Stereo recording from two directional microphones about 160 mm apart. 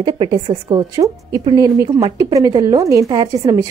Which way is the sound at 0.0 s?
30° right (ahead or behind).